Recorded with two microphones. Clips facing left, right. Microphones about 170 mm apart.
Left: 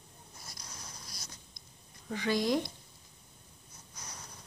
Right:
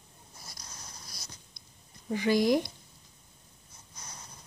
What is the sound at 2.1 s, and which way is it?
Speech, 10° right (ahead or behind).